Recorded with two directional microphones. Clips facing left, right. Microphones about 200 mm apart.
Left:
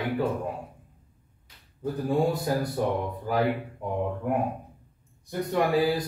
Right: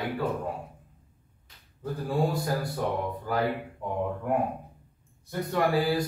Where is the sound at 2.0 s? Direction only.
20° left (ahead or behind).